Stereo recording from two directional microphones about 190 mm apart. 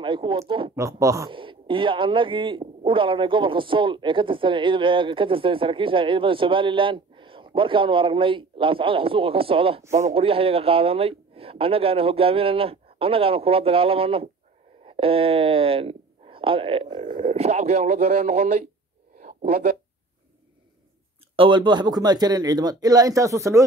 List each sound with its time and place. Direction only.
0.0 s speech: 25° right (ahead or behind)
1.3 s speech: 25° right (ahead or behind)
19.1 s a sound: 45° right (ahead or behind)
21.4 s speech: 25° right (ahead or behind)